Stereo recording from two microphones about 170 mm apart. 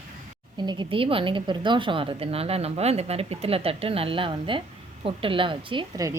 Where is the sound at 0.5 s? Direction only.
25° right (ahead or behind).